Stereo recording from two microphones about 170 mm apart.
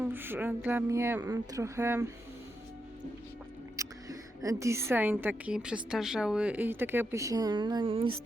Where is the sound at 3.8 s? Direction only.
20° right (ahead or behind).